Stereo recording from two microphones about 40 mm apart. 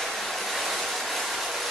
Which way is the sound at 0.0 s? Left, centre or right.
Centre.